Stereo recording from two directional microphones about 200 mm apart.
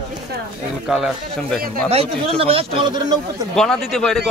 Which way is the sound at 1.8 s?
30° right (ahead or behind).